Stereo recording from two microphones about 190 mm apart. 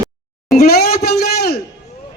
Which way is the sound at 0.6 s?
55° left (ahead or behind).